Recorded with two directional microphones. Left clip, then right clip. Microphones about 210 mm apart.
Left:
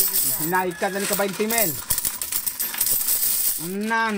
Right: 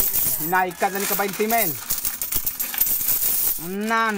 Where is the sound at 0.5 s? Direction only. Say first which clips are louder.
Right 3 dB; 15° right (ahead or behind).